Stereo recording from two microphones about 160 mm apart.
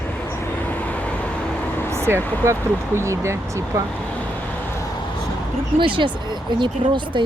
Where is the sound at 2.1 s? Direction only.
15° right (ahead or behind).